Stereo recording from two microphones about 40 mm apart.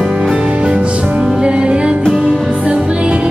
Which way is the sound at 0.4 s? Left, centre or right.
Right.